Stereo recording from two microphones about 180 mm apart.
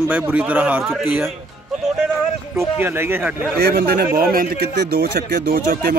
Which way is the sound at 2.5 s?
10° right (ahead or behind).